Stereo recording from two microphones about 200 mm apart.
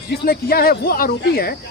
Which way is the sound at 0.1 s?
50° left (ahead or behind).